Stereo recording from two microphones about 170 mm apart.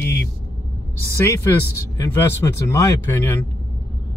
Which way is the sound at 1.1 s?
15° left (ahead or behind).